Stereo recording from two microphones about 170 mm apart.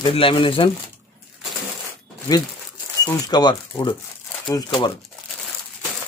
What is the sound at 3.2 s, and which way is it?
Speech, 25° left (ahead or behind).